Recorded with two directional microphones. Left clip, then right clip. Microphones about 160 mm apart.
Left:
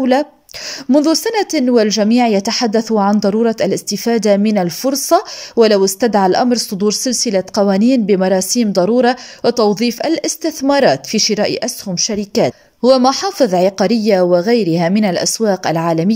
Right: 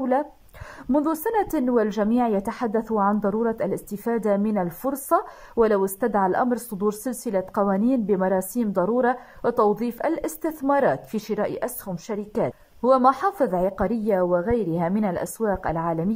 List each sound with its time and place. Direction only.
0.0 s a woman's voice: 25° left (ahead or behind)
12.8 s a woman's voice: 15° left (ahead or behind)